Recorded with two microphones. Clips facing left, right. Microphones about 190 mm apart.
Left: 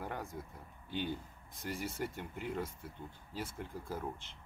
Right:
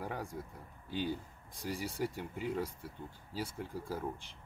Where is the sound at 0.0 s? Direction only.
Centre (ahead or behind).